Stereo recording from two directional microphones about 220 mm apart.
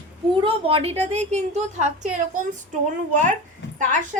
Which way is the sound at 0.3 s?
25° right (ahead or behind).